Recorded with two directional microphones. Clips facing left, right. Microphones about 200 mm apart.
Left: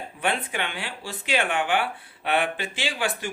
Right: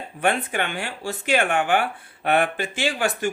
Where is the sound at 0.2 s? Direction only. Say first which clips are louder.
Right 5 dB; 50° right (ahead or behind).